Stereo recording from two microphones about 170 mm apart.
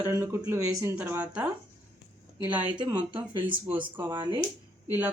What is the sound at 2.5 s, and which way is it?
Speech, 25° right (ahead or behind).